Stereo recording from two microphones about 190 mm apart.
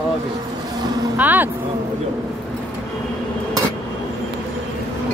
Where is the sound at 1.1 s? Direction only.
10° right (ahead or behind).